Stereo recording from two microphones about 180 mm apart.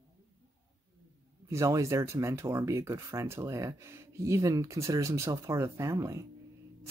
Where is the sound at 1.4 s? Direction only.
15° right (ahead or behind).